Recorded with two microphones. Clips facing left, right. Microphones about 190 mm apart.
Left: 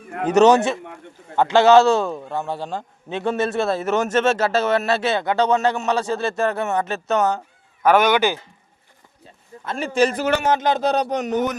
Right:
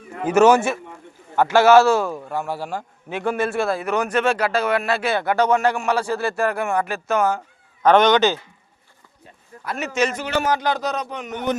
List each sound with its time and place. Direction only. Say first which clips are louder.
0.3 s a man's voice: left 1 dB; 20° left (ahead or behind)
7.8 s speech: right 1 dB; 5° left (ahead or behind)
9.6 s a man's voice: left 3 dB; 30° left (ahead or behind)
10.4 s a man's voice: left 2 dB; 20° left (ahead or behind); by 11.4 s 40° left (ahead or behind)